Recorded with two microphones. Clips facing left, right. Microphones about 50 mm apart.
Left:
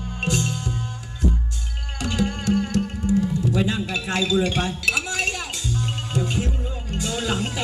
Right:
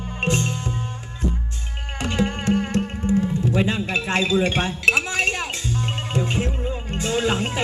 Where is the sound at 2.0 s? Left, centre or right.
Right.